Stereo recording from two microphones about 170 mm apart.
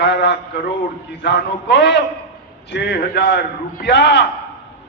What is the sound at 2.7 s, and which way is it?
A man's voice, 80° left.